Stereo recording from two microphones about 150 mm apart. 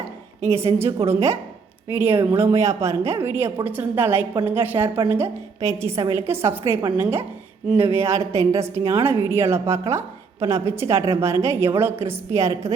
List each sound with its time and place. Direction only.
0.8 s a woman's voice: 20° right (ahead or behind)